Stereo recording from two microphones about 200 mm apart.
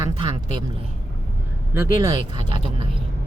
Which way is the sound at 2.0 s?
20° right (ahead or behind).